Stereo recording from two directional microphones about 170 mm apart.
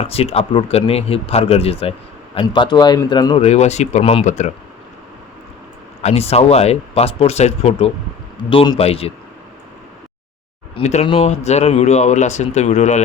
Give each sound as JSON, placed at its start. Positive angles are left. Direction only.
{"t": 0.0, "sound": "a man's voice", "side_deg": 35}
{"t": 3.4, "sound": "speech", "side_deg": 40}
{"t": 6.0, "sound": "speech", "side_deg": 40}
{"t": 8.4, "sound": "a man's voice", "side_deg": 25}
{"t": 10.8, "sound": "speech", "side_deg": 35}